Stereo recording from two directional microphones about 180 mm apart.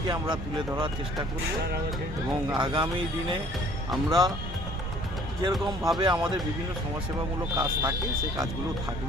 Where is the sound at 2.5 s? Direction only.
25° right (ahead or behind).